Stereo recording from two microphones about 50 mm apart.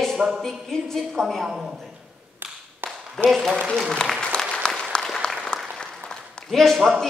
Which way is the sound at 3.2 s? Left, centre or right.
Centre.